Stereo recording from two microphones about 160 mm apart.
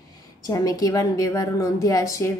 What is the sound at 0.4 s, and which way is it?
A woman's voice, 20° left (ahead or behind).